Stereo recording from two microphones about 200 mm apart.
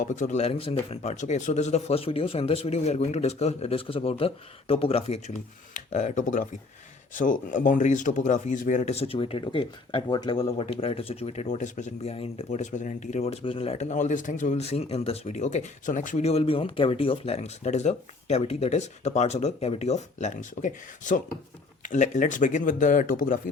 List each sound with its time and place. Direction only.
0.0 s speech: 35° left (ahead or behind)